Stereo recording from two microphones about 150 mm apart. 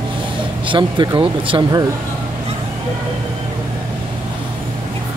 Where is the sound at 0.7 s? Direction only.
30° right (ahead or behind).